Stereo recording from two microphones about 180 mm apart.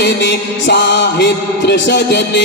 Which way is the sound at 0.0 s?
70° left (ahead or behind).